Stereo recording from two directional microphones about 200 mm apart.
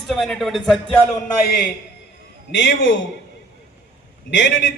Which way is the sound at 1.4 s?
50° left (ahead or behind).